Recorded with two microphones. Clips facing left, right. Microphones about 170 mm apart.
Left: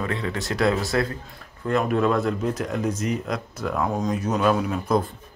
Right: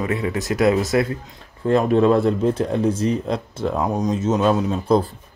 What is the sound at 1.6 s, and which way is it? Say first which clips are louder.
Speech: right 6 dB; 30° right (ahead or behind).